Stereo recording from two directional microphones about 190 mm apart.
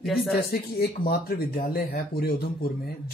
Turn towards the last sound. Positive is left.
turn(degrees=55)  # may be behind; listen again after turning